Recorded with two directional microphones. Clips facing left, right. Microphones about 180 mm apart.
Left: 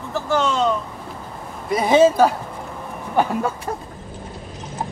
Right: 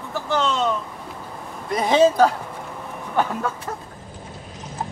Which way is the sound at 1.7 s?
5° left (ahead or behind).